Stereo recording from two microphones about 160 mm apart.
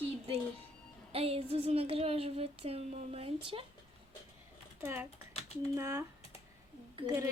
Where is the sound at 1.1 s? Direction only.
40° right (ahead or behind).